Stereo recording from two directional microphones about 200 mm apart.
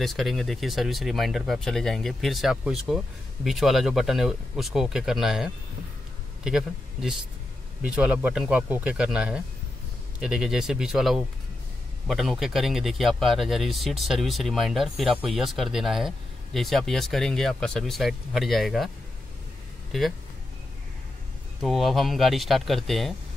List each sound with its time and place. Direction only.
0.0 s speech: centre (ahead or behind)
19.9 s speech: centre (ahead or behind)
21.5 s speech: centre (ahead or behind)